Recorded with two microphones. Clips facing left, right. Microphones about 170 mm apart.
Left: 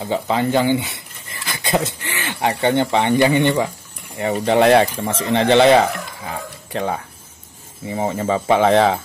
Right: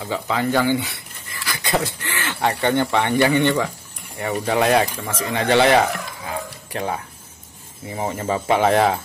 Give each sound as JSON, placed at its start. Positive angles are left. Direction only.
{"t": 0.0, "sound": "speech", "side_deg": 25}